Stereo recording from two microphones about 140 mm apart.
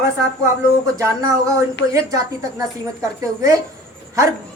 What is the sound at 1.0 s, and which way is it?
A woman's voice, 25° right (ahead or behind).